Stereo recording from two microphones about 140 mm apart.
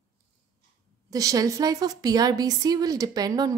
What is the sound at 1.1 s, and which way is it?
A woman's voice, 25° right (ahead or behind).